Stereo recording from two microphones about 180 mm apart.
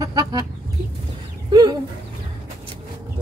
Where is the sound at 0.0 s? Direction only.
20° right (ahead or behind).